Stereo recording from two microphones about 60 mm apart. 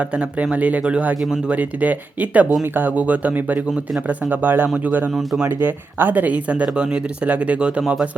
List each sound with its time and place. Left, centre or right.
0.0 s speech: right